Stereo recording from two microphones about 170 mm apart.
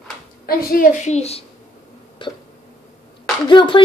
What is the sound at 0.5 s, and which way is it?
Speech, 60° left (ahead or behind).